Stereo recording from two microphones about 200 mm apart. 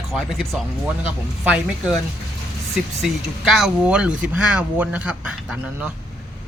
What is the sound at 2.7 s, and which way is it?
Speech, centre (ahead or behind).